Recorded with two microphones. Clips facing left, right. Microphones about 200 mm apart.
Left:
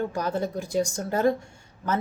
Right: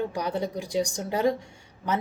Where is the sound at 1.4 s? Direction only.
15° right (ahead or behind).